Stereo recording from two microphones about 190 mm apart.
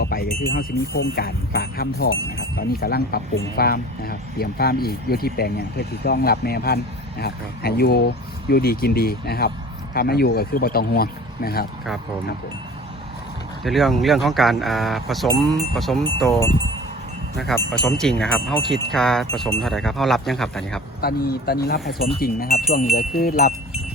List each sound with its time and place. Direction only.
0.0 s a sound: 50° left (ahead or behind)
0.5 s speech: 55° left (ahead or behind)
13.7 s speech: centre (ahead or behind)
17.8 s speech: 5° left (ahead or behind)
21.0 s speech: 55° left (ahead or behind)